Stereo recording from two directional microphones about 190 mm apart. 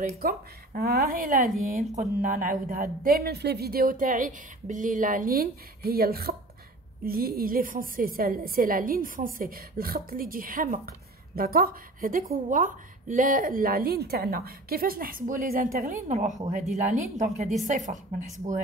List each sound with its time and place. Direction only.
0.2 s a woman's voice: 50° right (ahead or behind)